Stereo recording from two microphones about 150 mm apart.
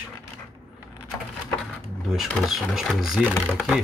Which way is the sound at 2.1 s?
Centre (ahead or behind).